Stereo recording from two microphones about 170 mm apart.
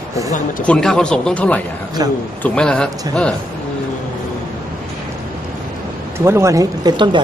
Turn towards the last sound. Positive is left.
turn(degrees=-25)  # may be behind; listen again after turning